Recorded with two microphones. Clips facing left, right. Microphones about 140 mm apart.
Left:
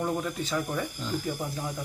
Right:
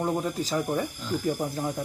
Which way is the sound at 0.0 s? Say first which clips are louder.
Right 2 dB; 35° right (ahead or behind).